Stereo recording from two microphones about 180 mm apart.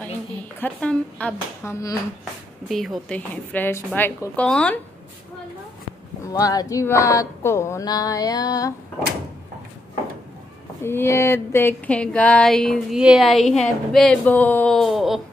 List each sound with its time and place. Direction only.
0.6 s a woman's voice: 5° left (ahead or behind)
2.7 s a woman's voice: centre (ahead or behind)
6.3 s a sound: 20° left (ahead or behind)
10.8 s speech: 15° left (ahead or behind)